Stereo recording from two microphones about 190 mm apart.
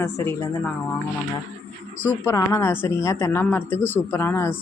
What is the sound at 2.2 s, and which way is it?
A woman's voice, 15° left (ahead or behind).